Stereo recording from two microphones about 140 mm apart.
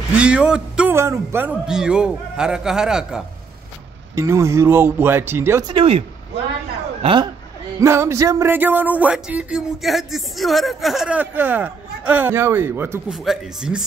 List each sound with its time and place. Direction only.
0.2 s music: 5° right (ahead or behind)
0.9 s a man's voice: 20° right (ahead or behind)
4.1 s music: 20° right (ahead or behind)
5.7 s speech: 40° right (ahead or behind)
7.8 s music: 20° right (ahead or behind)
13.1 s a man's voice: centre (ahead or behind)